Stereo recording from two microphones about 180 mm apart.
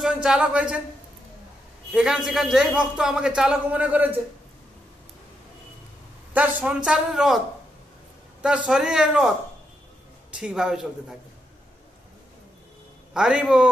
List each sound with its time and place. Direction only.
0.0 s a man's voice: 5° right (ahead or behind)
1.9 s a man's voice: 5° right (ahead or behind)
6.3 s a man's voice: 5° right (ahead or behind)
10.3 s a man's voice: 5° right (ahead or behind)
13.1 s a man's voice: 5° right (ahead or behind)